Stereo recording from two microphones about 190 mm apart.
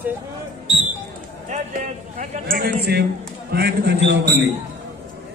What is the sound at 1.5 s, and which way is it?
A man's voice, 40° right (ahead or behind).